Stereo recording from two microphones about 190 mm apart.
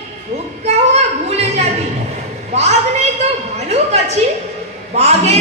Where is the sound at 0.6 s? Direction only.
35° right (ahead or behind).